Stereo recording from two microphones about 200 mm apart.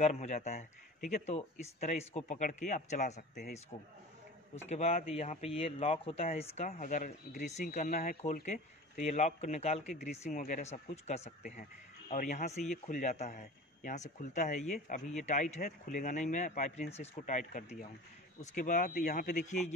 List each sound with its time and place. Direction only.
0.0 s speech: 35° left (ahead or behind)
4.6 s speech: 35° left (ahead or behind)